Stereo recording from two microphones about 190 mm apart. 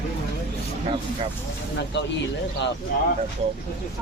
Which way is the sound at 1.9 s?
65° left (ahead or behind).